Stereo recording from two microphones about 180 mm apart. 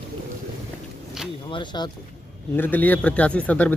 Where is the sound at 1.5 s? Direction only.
25° left (ahead or behind).